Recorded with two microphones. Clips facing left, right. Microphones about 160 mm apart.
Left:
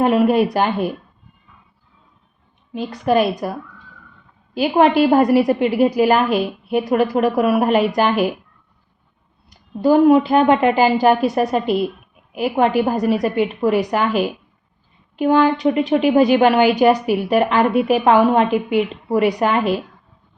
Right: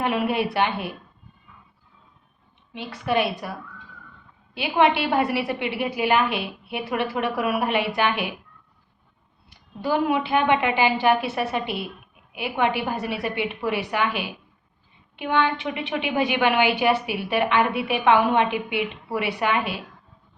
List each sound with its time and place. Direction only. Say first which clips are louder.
0.0 s a woman's voice: left 9 dB; 40° left (ahead or behind)
2.7 s a woman's voice: left 7 dB; 40° left (ahead or behind)
4.5 s a woman's voice: left 6 dB; 40° left (ahead or behind)
9.5 s a woman's voice: left 10 dB; 40° left (ahead or behind)